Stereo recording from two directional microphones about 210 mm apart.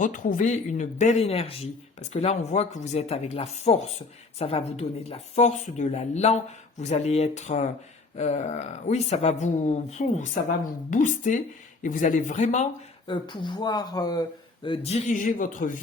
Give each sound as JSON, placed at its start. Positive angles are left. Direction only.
{"t": 0.0, "sound": "speech", "side_deg": 40}
{"t": 13.1, "sound": "speech", "side_deg": 20}